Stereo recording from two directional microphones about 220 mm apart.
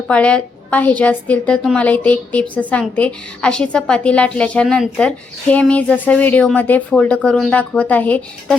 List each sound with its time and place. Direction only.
0.1 s a woman's voice: 5° left (ahead or behind)